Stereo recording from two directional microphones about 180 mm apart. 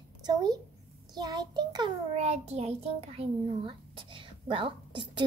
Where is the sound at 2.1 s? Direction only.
35° right (ahead or behind).